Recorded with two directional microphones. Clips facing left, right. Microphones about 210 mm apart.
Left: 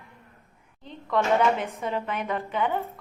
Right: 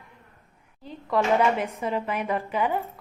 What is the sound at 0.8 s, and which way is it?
A woman's voice, 5° right (ahead or behind).